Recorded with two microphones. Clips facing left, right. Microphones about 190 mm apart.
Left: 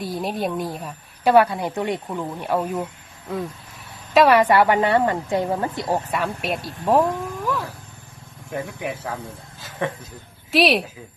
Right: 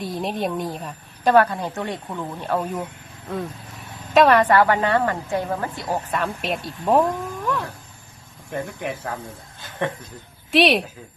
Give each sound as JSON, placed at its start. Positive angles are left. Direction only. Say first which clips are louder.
{"t": 0.0, "sound": "a woman's voice", "louder": "even", "side_deg": 0}
{"t": 4.1, "sound": "a woman's voice", "louder": "even", "side_deg": 5}
{"t": 6.1, "sound": "speech", "louder": "even", "side_deg": 5}